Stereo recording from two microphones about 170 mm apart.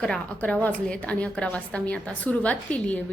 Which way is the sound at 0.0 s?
5° left (ahead or behind).